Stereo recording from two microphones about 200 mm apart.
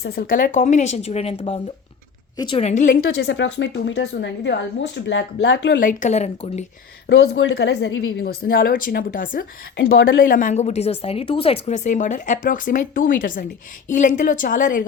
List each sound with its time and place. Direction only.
0.0 s speech: 50° left (ahead or behind); by 5.8 s 70° left (ahead or behind)
5.8 s speech: 40° left (ahead or behind)
7.1 s speech: 65° left (ahead or behind)
8.2 s speech: 50° left (ahead or behind)
9.7 s speech: 75° left (ahead or behind)
10.2 s speech: 40° left (ahead or behind)